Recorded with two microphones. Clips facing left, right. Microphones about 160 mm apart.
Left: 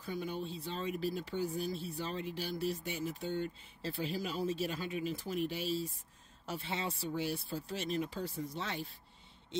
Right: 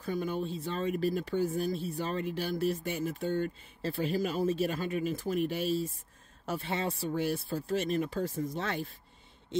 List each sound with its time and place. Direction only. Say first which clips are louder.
0.0 s speech: right 6 dB; 50° right (ahead or behind)